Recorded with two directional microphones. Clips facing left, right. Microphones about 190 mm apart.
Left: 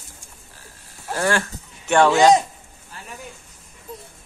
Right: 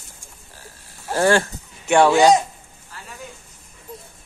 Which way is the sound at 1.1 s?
30° right (ahead or behind).